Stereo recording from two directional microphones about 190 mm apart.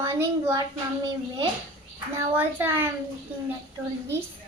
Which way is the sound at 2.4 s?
10° right (ahead or behind).